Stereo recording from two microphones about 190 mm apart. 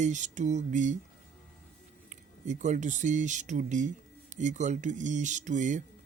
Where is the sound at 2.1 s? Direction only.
40° right (ahead or behind).